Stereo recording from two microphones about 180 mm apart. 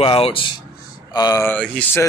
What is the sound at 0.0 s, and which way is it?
Speech, 30° left (ahead or behind).